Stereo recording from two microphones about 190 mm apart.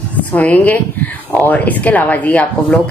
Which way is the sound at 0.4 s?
10° left (ahead or behind).